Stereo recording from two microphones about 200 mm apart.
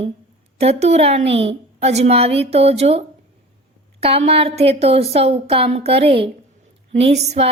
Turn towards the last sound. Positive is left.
turn(degrees=-30)  # may be behind; listen again after turning